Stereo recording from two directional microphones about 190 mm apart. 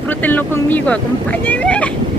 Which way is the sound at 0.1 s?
10° left (ahead or behind).